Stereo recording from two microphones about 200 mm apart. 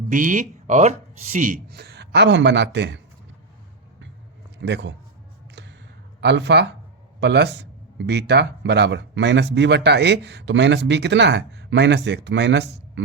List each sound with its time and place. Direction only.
0.1 s speech: 40° right (ahead or behind); by 3.0 s 60° right (ahead or behind)
4.6 s speech: 60° right (ahead or behind)
6.1 s speech: 60° right (ahead or behind)